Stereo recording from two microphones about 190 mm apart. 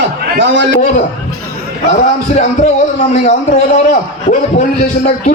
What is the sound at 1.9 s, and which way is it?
A man's voice, 40° left (ahead or behind).